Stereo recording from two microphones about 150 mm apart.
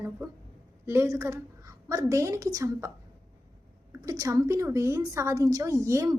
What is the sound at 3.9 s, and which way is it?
A woman's voice, 25° right (ahead or behind).